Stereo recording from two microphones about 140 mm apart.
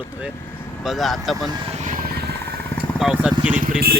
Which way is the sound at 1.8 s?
75° right (ahead or behind).